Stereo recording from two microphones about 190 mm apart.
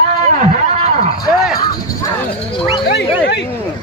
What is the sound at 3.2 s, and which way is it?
Hubbub, 60° left (ahead or behind).